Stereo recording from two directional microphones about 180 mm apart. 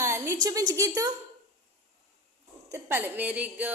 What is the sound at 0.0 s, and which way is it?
A woman's voice, 15° right (ahead or behind).